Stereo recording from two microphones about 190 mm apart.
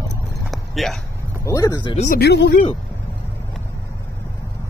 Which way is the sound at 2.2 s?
60° left (ahead or behind).